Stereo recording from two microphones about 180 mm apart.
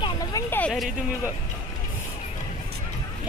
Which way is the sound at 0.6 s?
Centre (ahead or behind).